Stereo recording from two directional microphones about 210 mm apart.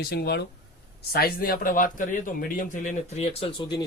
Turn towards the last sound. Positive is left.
turn(degrees=25)  # may be behind; listen again after turning